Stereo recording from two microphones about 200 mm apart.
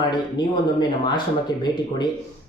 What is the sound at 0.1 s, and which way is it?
Speech, 20° left (ahead or behind).